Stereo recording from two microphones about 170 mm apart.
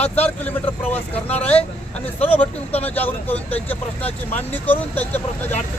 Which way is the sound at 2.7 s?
10° left (ahead or behind).